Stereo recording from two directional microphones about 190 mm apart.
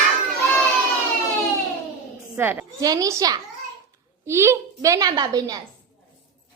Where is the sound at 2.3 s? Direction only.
10° right (ahead or behind).